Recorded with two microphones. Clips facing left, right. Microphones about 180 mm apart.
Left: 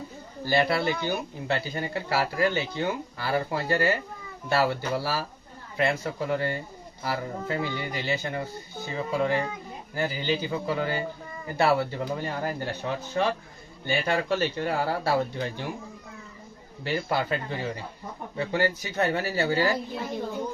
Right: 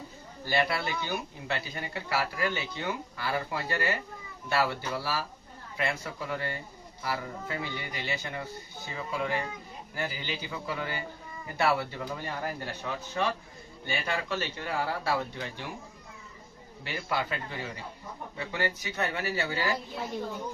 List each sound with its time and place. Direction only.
0.4 s speech: 30° left (ahead or behind)
16.8 s speech: 35° left (ahead or behind)